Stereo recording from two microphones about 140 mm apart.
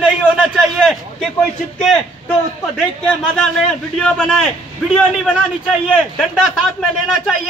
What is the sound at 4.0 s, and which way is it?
A man's voice, 5° left (ahead or behind).